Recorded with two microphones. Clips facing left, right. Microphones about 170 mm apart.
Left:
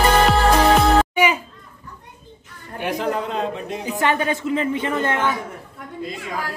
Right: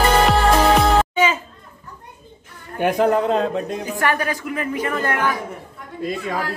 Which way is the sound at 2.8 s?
50° right (ahead or behind).